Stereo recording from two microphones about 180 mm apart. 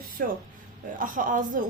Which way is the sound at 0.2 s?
55° right (ahead or behind).